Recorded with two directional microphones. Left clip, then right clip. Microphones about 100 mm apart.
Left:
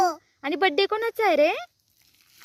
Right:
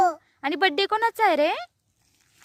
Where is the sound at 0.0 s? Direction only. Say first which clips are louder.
Right 2 dB; 45° right (ahead or behind).